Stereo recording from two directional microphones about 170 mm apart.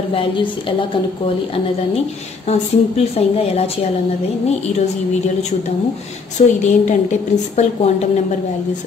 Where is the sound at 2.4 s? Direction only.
40° left (ahead or behind).